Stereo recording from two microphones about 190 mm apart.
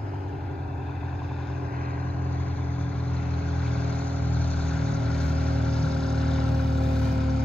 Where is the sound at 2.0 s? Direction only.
10° left (ahead or behind).